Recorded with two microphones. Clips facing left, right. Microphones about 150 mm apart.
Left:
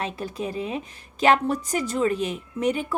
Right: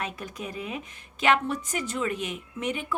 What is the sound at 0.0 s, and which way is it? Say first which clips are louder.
A woman's voice: left 5 dB; 30° left (ahead or behind).